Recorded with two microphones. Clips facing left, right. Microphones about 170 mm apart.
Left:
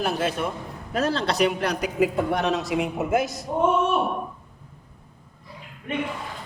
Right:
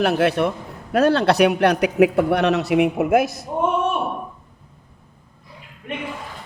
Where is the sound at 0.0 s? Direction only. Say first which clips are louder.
Right 7 dB; 70° right (ahead or behind).